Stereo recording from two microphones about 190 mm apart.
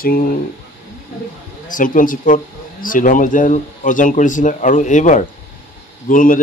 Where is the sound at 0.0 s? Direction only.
50° left (ahead or behind).